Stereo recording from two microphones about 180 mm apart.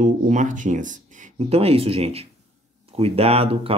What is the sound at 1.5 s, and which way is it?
Speech, 35° right (ahead or behind).